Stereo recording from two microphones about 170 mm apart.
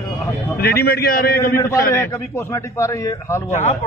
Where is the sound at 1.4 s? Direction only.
15° left (ahead or behind).